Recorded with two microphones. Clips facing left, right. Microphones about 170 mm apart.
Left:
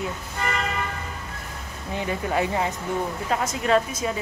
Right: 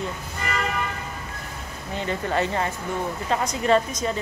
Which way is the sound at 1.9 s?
10° left (ahead or behind).